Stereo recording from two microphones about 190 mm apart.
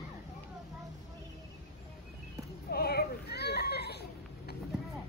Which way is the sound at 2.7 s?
55° left (ahead or behind).